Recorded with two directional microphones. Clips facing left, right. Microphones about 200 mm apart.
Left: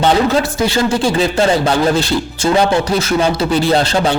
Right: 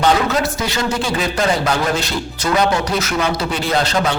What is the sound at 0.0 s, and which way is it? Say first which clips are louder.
A man's voice: left 3 dB; 30° left (ahead or behind).